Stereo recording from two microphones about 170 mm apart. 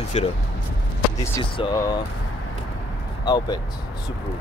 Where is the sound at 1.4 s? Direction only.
30° left (ahead or behind).